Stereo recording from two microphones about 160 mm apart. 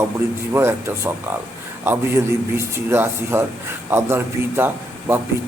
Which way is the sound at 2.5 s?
15° right (ahead or behind).